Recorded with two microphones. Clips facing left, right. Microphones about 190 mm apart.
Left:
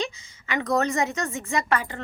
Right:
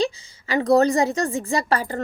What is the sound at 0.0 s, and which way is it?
A woman's voice, 35° right (ahead or behind).